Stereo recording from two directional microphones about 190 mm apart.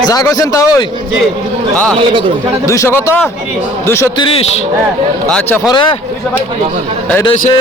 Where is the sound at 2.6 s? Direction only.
15° left (ahead or behind).